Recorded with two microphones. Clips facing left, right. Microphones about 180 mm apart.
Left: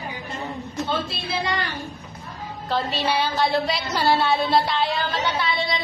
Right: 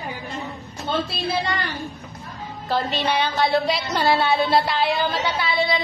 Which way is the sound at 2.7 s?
Centre (ahead or behind).